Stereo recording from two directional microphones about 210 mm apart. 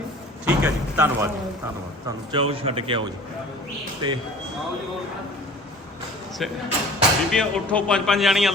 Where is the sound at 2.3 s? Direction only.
25° right (ahead or behind).